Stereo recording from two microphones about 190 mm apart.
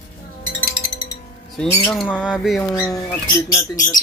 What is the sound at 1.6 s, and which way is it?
Speech, 5° left (ahead or behind).